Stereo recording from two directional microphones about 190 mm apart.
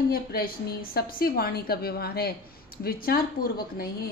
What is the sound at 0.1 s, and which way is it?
A woman's voice, 55° left (ahead or behind).